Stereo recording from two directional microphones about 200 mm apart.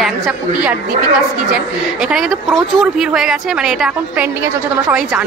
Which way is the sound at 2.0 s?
Centre (ahead or behind).